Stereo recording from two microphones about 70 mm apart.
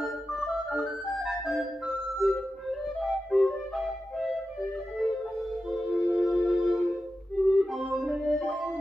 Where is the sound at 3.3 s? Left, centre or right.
Centre.